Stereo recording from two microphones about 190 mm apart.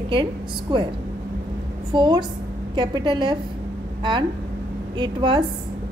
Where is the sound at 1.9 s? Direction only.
25° right (ahead or behind).